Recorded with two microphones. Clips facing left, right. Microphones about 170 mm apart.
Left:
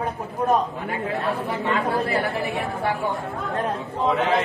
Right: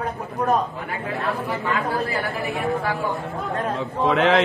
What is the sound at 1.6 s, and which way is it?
Speech, 30° left (ahead or behind).